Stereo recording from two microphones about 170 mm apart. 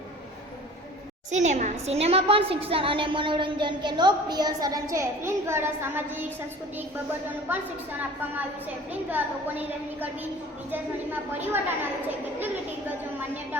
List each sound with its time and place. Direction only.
1.3 s a woman's voice: 45° right (ahead or behind); by 6.2 s 15° right (ahead or behind)
7.5 s a woman's voice: 10° right (ahead or behind)
8.9 s a woman's voice: 10° right (ahead or behind)
11.5 s a woman's voice: 10° right (ahead or behind)